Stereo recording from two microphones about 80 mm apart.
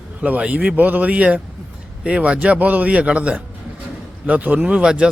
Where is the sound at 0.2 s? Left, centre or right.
Centre.